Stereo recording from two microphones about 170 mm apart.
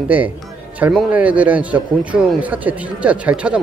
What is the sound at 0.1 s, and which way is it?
Speech, 10° right (ahead or behind).